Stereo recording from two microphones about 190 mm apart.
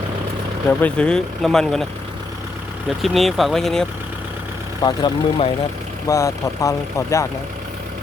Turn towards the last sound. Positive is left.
turn(degrees=15)  # may be behind; listen again after turning